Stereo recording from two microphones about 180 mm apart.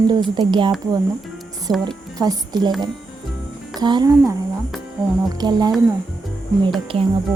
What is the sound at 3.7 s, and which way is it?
Speech, 25° right (ahead or behind).